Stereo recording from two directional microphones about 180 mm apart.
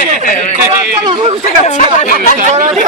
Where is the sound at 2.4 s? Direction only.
45° right (ahead or behind).